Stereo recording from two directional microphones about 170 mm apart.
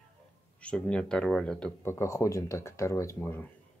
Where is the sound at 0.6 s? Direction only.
5° left (ahead or behind).